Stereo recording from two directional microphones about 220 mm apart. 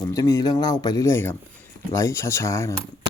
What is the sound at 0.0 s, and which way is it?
Speech, 15° left (ahead or behind).